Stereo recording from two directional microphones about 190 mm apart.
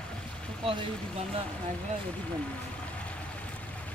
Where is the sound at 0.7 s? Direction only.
30° right (ahead or behind).